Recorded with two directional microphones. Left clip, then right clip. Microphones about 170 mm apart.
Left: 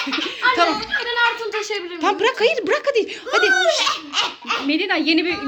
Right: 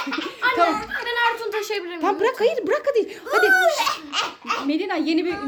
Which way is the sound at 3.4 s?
90° right.